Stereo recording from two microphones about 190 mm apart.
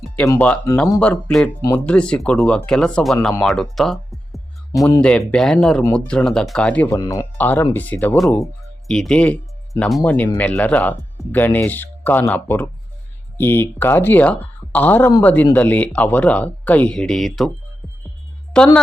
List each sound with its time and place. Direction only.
0.2 s speech: 10° left (ahead or behind)
3.4 s music: centre (ahead or behind)
4.9 s speech: 5° left (ahead or behind)
7.0 s speech: 20° left (ahead or behind)
7.3 s speech: 10° left (ahead or behind)
18.5 s a woman's voice: 5° left (ahead or behind)